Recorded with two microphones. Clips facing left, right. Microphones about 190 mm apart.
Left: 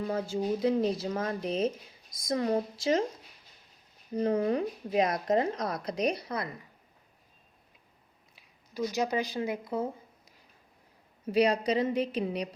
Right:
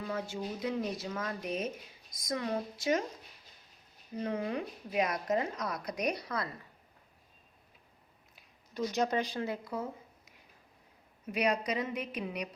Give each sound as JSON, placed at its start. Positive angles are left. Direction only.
{"t": 0.0, "sound": "speech", "side_deg": 35}
{"t": 4.1, "sound": "speech", "side_deg": 35}
{"t": 8.4, "sound": "speech", "side_deg": 5}
{"t": 9.7, "sound": "a sound", "side_deg": 30}
{"t": 11.3, "sound": "speech", "side_deg": 30}